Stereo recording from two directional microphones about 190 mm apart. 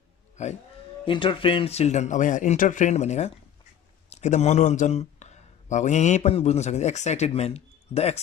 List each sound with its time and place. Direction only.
0.4 s speech: 35° left (ahead or behind)
1.0 s a man's voice: 25° left (ahead or behind)